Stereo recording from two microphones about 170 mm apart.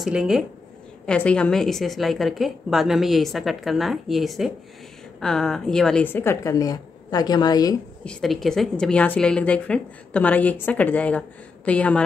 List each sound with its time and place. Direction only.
0.0 s a woman's voice: 5° right (ahead or behind); by 7.7 s 20° left (ahead or behind)
8.0 s a woman's voice: 5° left (ahead or behind)